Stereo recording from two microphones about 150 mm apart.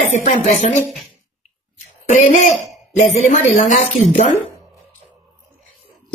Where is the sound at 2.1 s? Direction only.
50° left (ahead or behind).